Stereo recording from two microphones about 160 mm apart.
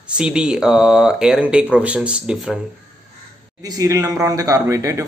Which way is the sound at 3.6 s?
20° right (ahead or behind).